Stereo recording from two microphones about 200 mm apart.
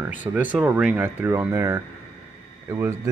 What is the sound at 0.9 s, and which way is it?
Speech, 10° right (ahead or behind).